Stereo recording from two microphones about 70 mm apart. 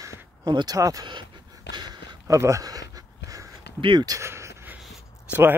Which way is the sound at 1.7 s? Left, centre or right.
Right.